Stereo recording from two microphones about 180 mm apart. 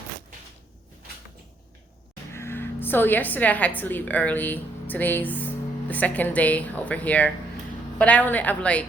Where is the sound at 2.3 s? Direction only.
15° left (ahead or behind).